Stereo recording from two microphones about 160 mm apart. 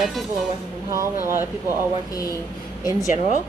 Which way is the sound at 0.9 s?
15° right (ahead or behind).